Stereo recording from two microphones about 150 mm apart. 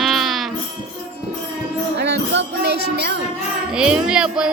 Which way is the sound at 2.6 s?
90° right.